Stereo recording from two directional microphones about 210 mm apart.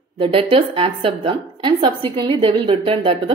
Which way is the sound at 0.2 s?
25° right (ahead or behind).